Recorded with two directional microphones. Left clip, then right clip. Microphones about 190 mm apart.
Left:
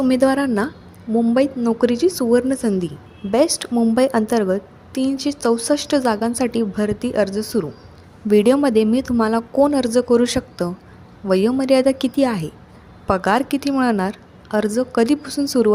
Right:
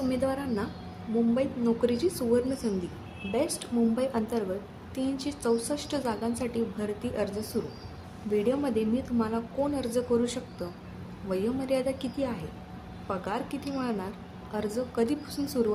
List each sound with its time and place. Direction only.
0.1 s a woman's voice: 50° left (ahead or behind)